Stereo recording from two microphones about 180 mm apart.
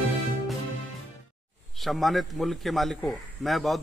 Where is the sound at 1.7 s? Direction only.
Centre (ahead or behind).